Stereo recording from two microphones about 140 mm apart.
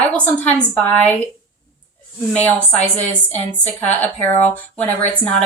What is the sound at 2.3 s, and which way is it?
A woman's voice, 10° left (ahead or behind).